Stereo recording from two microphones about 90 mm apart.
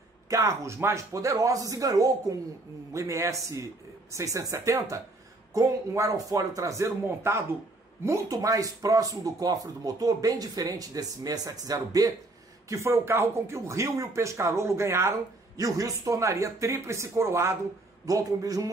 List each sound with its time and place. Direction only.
0.3 s speech: 35° right (ahead or behind)
18.0 s speech: 40° right (ahead or behind)